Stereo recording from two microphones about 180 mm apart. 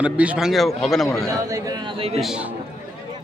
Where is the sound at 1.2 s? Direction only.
20° right (ahead or behind).